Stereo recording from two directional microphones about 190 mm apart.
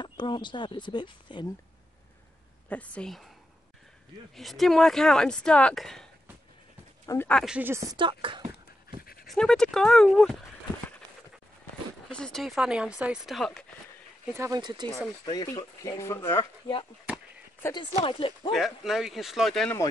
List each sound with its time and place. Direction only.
0.0 s speech: 25° left (ahead or behind)
2.7 s speech: 5° left (ahead or behind)
4.4 s speech: centre (ahead or behind)
7.1 s speech: 10° left (ahead or behind)
7.4 s speech: 10° right (ahead or behind); by 8.5 s 25° right (ahead or behind)
9.0 s dog: 50° left (ahead or behind)
9.3 s speech: 5° left (ahead or behind)
12.1 s speech: 5° left (ahead or behind)
14.3 s speech: 15° right (ahead or behind)
15.2 s speech: 20° left (ahead or behind)
18.0 s speech: 25° left (ahead or behind)
18.5 s speech: centre (ahead or behind)